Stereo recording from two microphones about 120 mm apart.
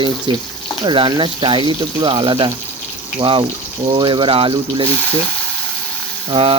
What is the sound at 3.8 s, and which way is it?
Speech, 45° right (ahead or behind).